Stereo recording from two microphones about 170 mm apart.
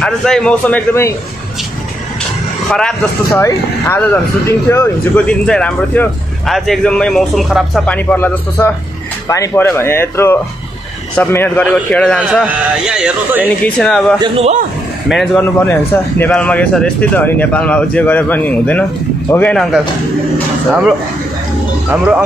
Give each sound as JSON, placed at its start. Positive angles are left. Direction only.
{"t": 0.0, "sound": "speech", "side_deg": 5}
{"t": 3.3, "sound": "speech", "side_deg": 15}
{"t": 12.4, "sound": "speech", "side_deg": -5}
{"t": 13.7, "sound": "speech", "side_deg": 5}
{"t": 14.2, "sound": "a man's voice", "side_deg": -30}
{"t": 15.3, "sound": "speech", "side_deg": 10}
{"t": 21.9, "sound": "speech", "side_deg": -5}